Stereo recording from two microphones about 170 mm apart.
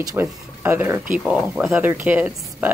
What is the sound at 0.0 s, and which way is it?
Speech, 15° right (ahead or behind).